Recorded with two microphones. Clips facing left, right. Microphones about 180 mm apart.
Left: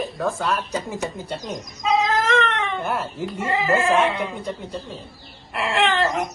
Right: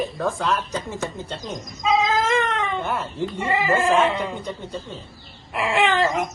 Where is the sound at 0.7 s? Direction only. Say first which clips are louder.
Left 1 dB; 10° left (ahead or behind).